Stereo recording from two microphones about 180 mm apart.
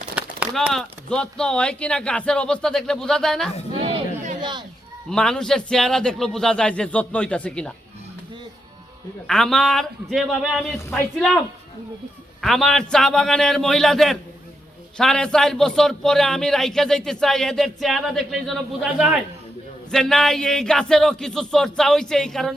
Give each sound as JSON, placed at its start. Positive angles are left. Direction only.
{"t": 0.2, "sound": "a man's voice", "side_deg": -5}
{"t": 3.8, "sound": "a sound", "side_deg": -35}
{"t": 5.0, "sound": "a man's voice", "side_deg": 5}
{"t": 9.2, "sound": "a man's voice", "side_deg": 0}
{"t": 10.8, "sound": "speech", "side_deg": 15}
{"t": 12.4, "sound": "a man's voice", "side_deg": 0}